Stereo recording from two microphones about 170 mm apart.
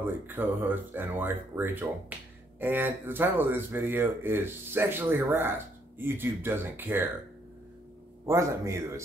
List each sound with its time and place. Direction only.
0.0 s speech: 10° right (ahead or behind)
8.3 s speech: 15° right (ahead or behind)